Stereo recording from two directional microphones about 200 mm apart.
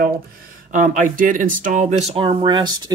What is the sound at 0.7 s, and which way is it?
Speech, 40° right (ahead or behind).